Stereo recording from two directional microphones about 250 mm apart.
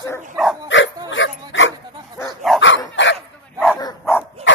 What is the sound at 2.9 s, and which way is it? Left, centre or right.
Dog, left.